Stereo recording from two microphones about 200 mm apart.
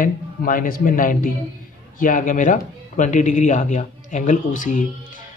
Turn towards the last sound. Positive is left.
turn(degrees=40)  # may be behind; listen again after turning